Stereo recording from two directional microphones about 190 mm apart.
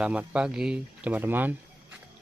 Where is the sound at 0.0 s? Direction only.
5° right (ahead or behind).